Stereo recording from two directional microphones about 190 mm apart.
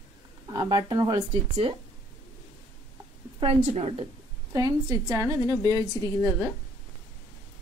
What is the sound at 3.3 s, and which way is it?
Speech, 35° right (ahead or behind).